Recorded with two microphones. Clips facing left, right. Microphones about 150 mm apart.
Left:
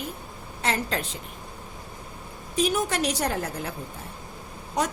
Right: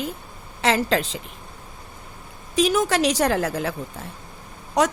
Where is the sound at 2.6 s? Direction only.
90° right.